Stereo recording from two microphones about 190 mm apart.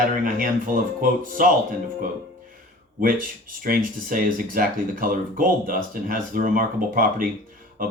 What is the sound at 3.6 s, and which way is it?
A man's voice, 50° right (ahead or behind).